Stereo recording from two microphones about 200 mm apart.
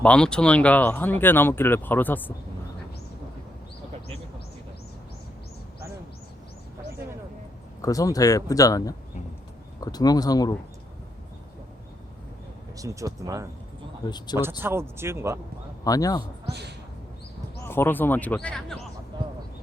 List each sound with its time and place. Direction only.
0.0 s speech: 5° left (ahead or behind)
7.8 s speech: 15° left (ahead or behind)
12.7 s speech: 15° right (ahead or behind)
14.6 s speech: 10° right (ahead or behind)
15.8 s speech: 20° left (ahead or behind)
17.7 s speech: 10° left (ahead or behind)
19.1 s a sound: 20° right (ahead or behind)